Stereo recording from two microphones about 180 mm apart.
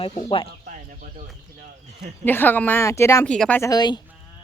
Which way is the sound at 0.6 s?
45° right (ahead or behind).